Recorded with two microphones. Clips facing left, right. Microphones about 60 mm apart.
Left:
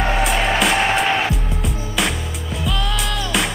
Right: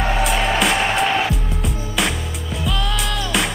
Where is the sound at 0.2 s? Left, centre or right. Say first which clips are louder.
Right 1 dB; centre.